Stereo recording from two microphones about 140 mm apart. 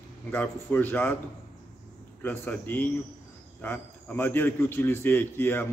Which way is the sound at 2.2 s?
15° left (ahead or behind).